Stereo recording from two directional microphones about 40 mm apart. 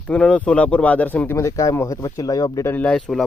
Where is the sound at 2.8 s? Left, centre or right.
Left.